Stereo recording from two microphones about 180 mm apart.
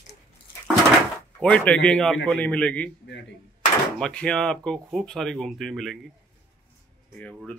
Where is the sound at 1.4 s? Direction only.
5° left (ahead or behind).